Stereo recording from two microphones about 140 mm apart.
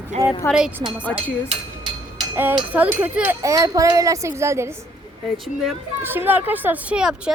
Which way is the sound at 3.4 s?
25° right (ahead or behind).